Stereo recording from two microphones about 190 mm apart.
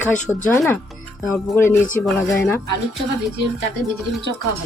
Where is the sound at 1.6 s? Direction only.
15° left (ahead or behind).